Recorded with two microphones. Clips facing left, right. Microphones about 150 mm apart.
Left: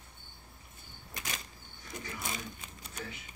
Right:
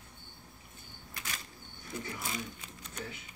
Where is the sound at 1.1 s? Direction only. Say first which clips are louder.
Left 2 dB; 20° left (ahead or behind).